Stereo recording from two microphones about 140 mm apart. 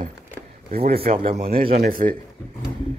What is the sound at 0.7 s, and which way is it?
Speech, 90° right.